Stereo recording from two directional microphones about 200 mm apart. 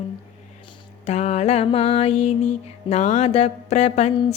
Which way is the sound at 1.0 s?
35° left (ahead or behind).